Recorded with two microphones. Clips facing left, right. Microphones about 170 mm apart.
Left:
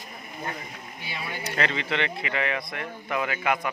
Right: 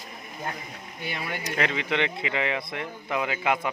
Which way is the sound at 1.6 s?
10° right (ahead or behind).